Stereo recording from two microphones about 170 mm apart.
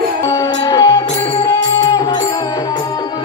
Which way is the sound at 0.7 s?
20° left (ahead or behind).